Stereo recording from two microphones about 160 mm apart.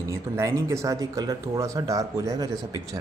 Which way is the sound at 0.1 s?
20° right (ahead or behind).